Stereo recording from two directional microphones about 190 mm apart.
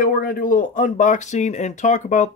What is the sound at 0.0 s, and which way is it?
Speech, 50° left (ahead or behind).